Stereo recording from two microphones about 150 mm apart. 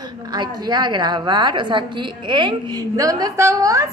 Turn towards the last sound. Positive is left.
turn(degrees=-20)  # may be behind; listen again after turning